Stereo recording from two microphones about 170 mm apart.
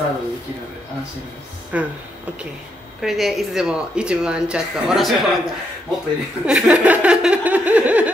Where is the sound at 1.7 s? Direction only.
10° right (ahead or behind).